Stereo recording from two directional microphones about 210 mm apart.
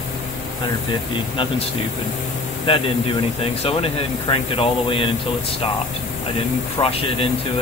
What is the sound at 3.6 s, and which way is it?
Speech, 25° left (ahead or behind).